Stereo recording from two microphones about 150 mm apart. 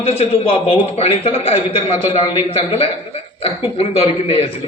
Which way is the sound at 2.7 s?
40° left (ahead or behind).